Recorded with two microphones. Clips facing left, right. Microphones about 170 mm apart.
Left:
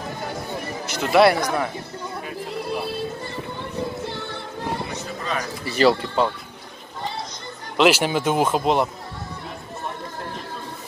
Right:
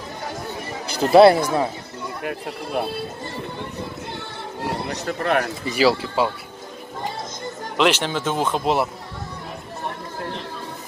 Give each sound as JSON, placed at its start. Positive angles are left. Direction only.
{"t": 0.8, "sound": "speech", "side_deg": -30}
{"t": 2.2, "sound": "speech", "side_deg": -60}
{"t": 4.8, "sound": "a man's voice", "side_deg": -65}
{"t": 5.7, "sound": "speech", "side_deg": -5}
{"t": 7.7, "sound": "speech", "side_deg": 5}